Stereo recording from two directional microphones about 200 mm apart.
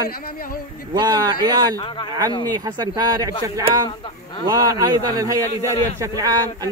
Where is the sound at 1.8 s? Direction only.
25° left (ahead or behind).